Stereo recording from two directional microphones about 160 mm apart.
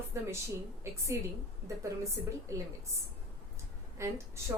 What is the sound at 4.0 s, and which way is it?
Speech, 20° right (ahead or behind).